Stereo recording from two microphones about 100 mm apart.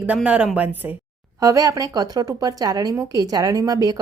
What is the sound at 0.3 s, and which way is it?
Speech, 15° right (ahead or behind).